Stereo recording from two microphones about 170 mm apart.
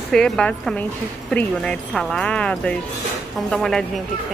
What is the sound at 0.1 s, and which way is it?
Speech, 5° left (ahead or behind).